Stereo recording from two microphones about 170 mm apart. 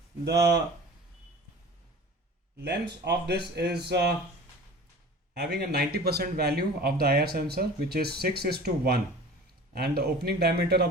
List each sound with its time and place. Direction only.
2.6 s speech: 75° right (ahead or behind)
5.3 s speech: 70° right (ahead or behind)